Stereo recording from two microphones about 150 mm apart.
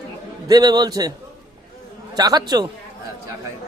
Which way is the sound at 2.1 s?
25° right (ahead or behind).